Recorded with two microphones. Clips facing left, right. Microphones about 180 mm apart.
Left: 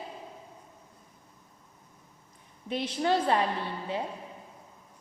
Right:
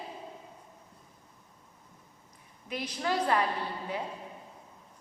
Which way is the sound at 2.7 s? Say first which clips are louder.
Left 5 dB; 25° left (ahead or behind).